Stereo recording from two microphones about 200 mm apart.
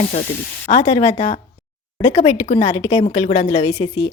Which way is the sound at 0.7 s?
30° left (ahead or behind).